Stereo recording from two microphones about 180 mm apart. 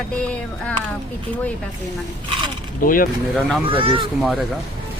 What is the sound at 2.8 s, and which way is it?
Speech, 50° left (ahead or behind).